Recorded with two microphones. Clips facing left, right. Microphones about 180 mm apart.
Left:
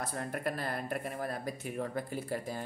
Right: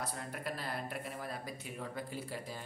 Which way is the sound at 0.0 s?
50° left (ahead or behind).